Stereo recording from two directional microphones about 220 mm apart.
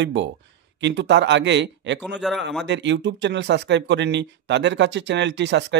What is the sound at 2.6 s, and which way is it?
Speech, 55° right (ahead or behind).